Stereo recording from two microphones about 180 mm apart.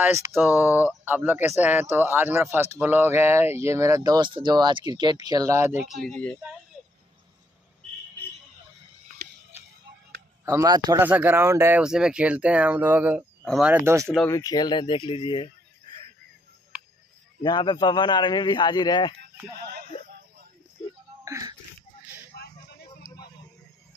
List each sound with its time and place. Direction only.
0.0 s speech: 15° right (ahead or behind)
5.9 s speech: centre (ahead or behind)
10.4 s speech: 20° right (ahead or behind)
11.1 s speech: 10° right (ahead or behind)
13.4 s a sound: 5° left (ahead or behind)
13.7 s speech: 5° right (ahead or behind)
14.0 s speech: 5° left (ahead or behind)
14.3 s a man's voice: 20° left (ahead or behind)
17.4 s a man's voice: 25° left (ahead or behind)
21.2 s music: 20° right (ahead or behind)
22.3 s a sound: 60° left (ahead or behind)